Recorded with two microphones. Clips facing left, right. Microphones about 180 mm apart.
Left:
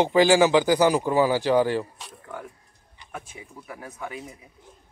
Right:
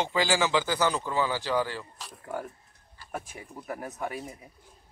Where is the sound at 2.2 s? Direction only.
40° right (ahead or behind).